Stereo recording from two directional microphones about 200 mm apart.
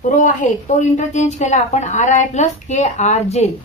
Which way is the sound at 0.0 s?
40° left (ahead or behind).